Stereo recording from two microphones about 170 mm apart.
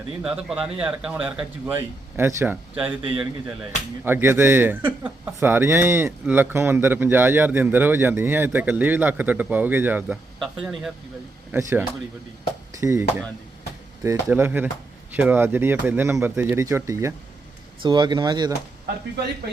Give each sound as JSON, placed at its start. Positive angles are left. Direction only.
{"t": 0.2, "sound": "speech", "side_deg": -5}
{"t": 11.5, "sound": "speech", "side_deg": -15}